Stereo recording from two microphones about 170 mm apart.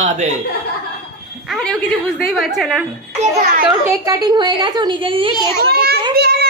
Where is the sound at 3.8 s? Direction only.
20° right (ahead or behind).